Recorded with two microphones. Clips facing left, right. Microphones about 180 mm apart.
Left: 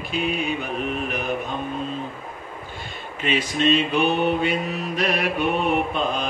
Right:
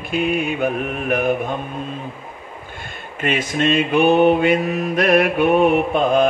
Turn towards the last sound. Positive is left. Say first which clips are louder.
# right 8 dB
turn(degrees=-55)  # may be behind; listen again after turning